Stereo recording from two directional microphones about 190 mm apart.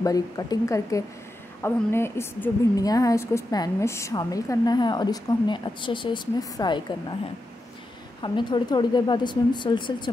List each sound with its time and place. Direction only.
0.0 s a woman's voice: 20° left (ahead or behind)
8.2 s a woman's voice: 25° left (ahead or behind)